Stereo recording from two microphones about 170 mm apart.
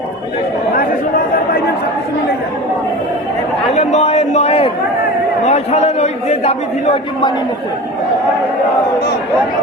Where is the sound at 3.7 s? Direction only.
40° left (ahead or behind).